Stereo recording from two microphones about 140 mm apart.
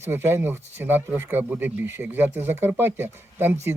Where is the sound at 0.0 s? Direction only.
15° right (ahead or behind).